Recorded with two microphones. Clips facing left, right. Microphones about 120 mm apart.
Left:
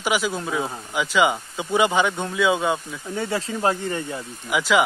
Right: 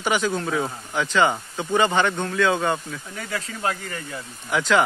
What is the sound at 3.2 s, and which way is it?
Speech, 30° left (ahead or behind).